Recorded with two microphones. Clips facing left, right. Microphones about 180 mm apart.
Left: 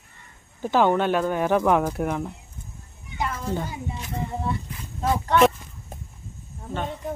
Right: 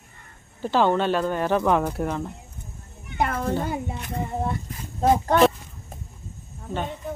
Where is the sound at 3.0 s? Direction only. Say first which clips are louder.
Right 4 dB; 60° right (ahead or behind).